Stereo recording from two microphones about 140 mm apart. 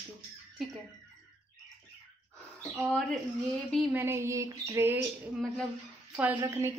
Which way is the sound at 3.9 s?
15° right (ahead or behind).